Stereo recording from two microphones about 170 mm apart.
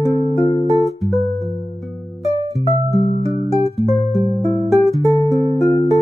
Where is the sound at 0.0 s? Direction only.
20° left (ahead or behind).